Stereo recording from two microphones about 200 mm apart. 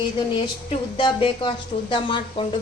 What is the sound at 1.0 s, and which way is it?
Speech, 25° left (ahead or behind).